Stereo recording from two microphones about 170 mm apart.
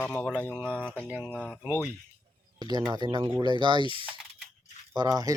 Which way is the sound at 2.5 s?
25° right (ahead or behind).